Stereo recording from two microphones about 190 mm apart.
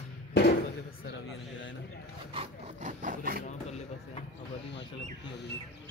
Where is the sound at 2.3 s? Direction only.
35° right (ahead or behind).